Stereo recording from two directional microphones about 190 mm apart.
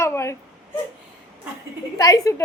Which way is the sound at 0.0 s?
15° left (ahead or behind).